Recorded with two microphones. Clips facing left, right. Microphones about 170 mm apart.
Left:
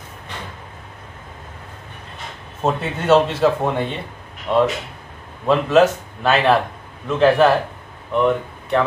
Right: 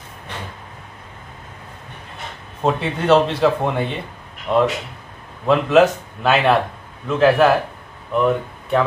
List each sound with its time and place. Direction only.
2.6 s speech: centre (ahead or behind)